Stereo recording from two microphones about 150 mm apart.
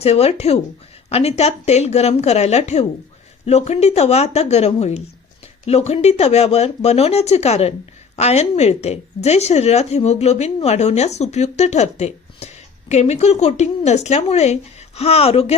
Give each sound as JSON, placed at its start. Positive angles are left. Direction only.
{"t": 0.0, "sound": "a woman's voice", "side_deg": 45}